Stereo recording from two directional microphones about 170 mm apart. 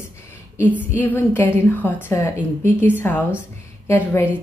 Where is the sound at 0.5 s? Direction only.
10° right (ahead or behind).